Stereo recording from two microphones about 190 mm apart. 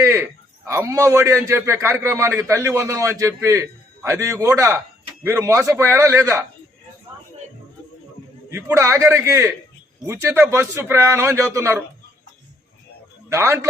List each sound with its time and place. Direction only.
0.0 s speech: 15° right (ahead or behind)
8.4 s speech: 15° right (ahead or behind)
13.3 s speech: 15° right (ahead or behind)